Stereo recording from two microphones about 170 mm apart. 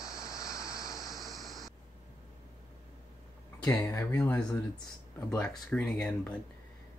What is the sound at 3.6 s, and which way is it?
Speech, 15° left (ahead or behind).